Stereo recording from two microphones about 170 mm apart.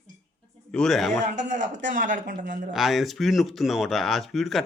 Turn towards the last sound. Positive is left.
turn(degrees=0)  # may be behind; listen again after turning